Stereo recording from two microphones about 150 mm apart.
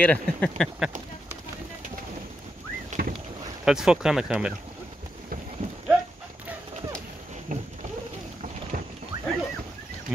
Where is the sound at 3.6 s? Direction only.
5° right (ahead or behind).